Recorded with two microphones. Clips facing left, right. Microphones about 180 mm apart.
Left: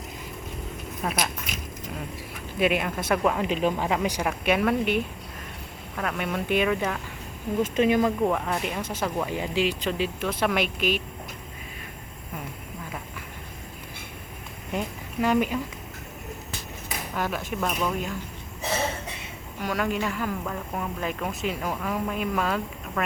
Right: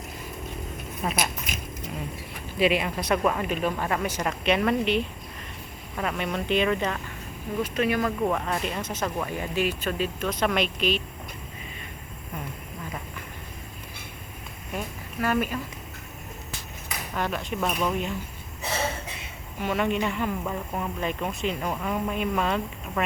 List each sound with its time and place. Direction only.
1.0 s speech: 5° right (ahead or behind)
2.6 s speech: centre (ahead or behind)
3.5 s speech: 15° left (ahead or behind)
6.0 s speech: centre (ahead or behind)
7.8 s speech: 20° left (ahead or behind)
14.7 s a sound: 20° left (ahead or behind)
17.2 s speech: 5° left (ahead or behind)
19.6 s speech: centre (ahead or behind)